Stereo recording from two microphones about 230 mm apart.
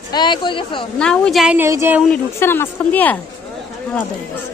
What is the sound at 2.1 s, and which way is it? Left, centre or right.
Speech, centre.